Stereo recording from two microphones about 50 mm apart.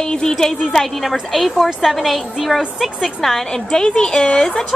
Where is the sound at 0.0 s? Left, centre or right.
Centre.